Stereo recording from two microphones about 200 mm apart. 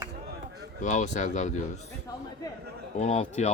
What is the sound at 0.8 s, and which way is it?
Speech, 40° left (ahead or behind).